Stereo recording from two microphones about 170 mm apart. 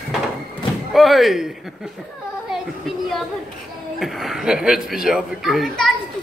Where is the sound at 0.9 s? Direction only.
Centre (ahead or behind).